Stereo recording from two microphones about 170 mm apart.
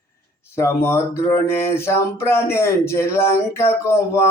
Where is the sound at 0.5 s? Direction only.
15° left (ahead or behind).